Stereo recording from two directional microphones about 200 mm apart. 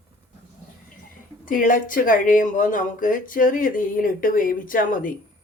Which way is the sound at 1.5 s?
40° left (ahead or behind).